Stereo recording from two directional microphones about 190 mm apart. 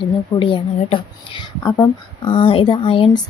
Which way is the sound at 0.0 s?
25° left (ahead or behind).